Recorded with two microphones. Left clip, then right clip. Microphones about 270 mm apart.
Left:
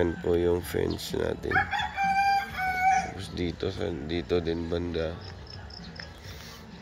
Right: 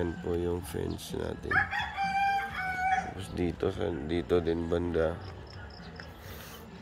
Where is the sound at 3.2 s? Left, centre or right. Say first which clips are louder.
Even; centre.